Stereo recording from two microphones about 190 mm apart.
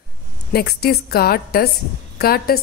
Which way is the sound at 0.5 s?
55° left (ahead or behind).